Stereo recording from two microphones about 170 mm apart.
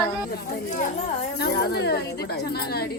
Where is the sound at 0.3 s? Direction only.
60° left (ahead or behind).